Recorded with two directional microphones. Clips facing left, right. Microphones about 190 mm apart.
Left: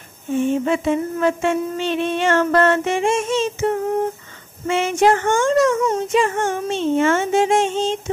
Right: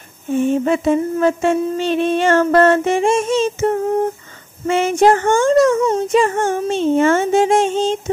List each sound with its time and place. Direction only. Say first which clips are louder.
0.7 s speech: right 4 dB; 40° right (ahead or behind)